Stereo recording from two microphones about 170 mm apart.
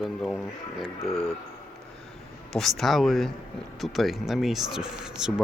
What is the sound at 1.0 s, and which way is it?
Speech, 35° left (ahead or behind).